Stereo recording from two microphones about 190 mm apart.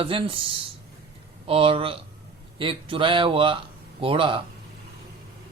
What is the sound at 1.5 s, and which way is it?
Speech, 30° right (ahead or behind).